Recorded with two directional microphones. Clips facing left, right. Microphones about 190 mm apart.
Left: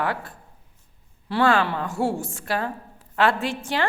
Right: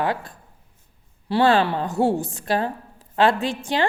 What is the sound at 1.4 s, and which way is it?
Speech, 35° right (ahead or behind).